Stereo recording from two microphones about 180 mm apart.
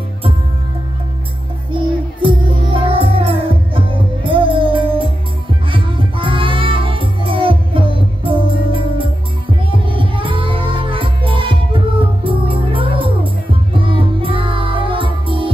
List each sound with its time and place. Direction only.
1.7 s music: 30° right (ahead or behind)
9.7 s music: 30° right (ahead or behind)